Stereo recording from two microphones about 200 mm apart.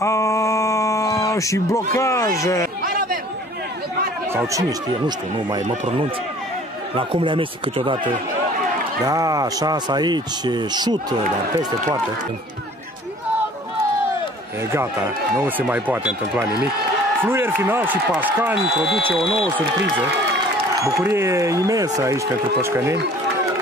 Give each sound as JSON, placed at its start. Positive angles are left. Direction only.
{"t": 0.0, "sound": "a sound", "side_deg": 15}
{"t": 2.0, "sound": "speech", "side_deg": 15}
{"t": 4.3, "sound": "speech", "side_deg": -15}
{"t": 7.0, "sound": "speech", "side_deg": -25}
{"t": 9.0, "sound": "speech", "side_deg": -15}
{"t": 15.4, "sound": "speech", "side_deg": -10}
{"t": 20.8, "sound": "speech", "side_deg": -15}